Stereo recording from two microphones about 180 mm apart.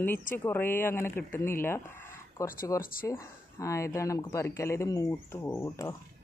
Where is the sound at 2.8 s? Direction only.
55° left (ahead or behind).